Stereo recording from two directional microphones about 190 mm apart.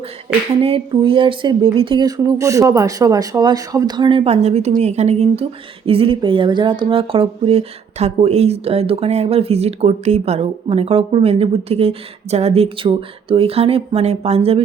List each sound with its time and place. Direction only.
0.6 s speech: 30° right (ahead or behind)